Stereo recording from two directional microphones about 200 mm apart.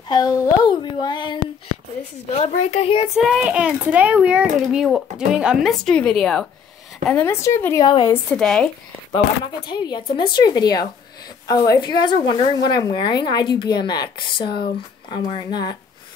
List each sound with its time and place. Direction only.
0.1 s a sound: 20° left (ahead or behind)
2.3 s a child's voice: 35° left (ahead or behind)
3.2 s a child's voice: 5° right (ahead or behind); by 8.2 s 25° left (ahead or behind)
8.4 s a child's voice: centre (ahead or behind)
9.7 s a woman's voice: 20° left (ahead or behind)